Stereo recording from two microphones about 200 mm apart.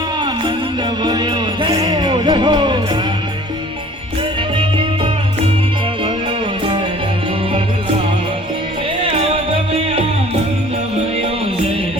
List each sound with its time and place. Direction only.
1.0 s speech: 20° right (ahead or behind)
9.0 s music: 30° right (ahead or behind)